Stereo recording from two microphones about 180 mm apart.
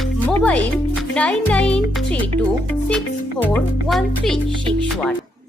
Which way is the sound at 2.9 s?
5° left (ahead or behind).